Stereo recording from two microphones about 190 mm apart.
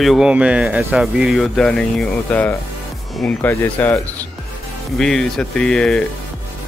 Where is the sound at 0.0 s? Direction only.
Centre (ahead or behind).